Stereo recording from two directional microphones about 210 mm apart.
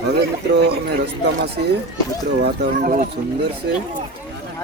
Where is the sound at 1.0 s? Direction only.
50° right (ahead or behind).